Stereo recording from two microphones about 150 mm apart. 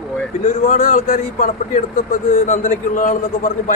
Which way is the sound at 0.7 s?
60° left (ahead or behind).